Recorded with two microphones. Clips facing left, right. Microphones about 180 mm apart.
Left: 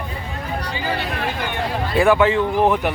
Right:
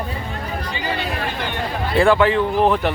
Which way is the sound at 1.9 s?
10° left (ahead or behind).